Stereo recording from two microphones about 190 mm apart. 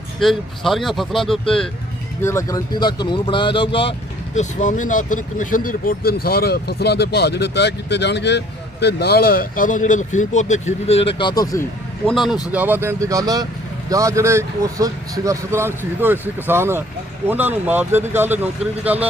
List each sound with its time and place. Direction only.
0.2 s speech: centre (ahead or behind)
2.2 s speech: 15° left (ahead or behind)
4.4 s speech: 40° left (ahead or behind); by 11.6 s 20° left (ahead or behind)
12.0 s speech: centre (ahead or behind)